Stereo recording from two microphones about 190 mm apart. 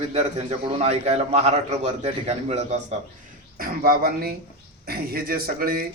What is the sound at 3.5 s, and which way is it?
Speech, 50° right (ahead or behind).